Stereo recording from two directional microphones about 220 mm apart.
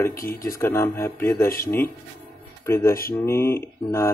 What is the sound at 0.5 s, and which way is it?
Speech, 10° left (ahead or behind).